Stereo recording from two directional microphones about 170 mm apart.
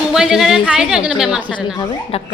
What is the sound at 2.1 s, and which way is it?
Speech, 35° left (ahead or behind).